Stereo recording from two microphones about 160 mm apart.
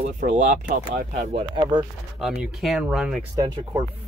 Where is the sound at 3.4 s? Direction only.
20° right (ahead or behind).